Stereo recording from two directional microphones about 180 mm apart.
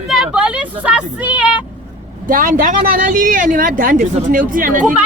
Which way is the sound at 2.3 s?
50° right (ahead or behind).